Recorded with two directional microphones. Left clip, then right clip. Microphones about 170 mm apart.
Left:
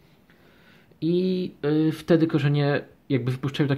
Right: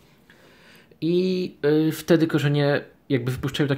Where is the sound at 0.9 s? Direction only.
Centre (ahead or behind).